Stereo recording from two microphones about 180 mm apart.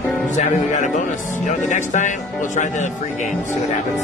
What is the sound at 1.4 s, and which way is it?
Speech, 45° left (ahead or behind).